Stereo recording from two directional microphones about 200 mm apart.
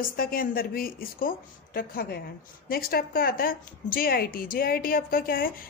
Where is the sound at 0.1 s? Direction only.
45° left (ahead or behind).